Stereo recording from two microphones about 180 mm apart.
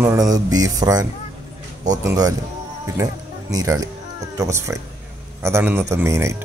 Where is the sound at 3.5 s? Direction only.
20° right (ahead or behind).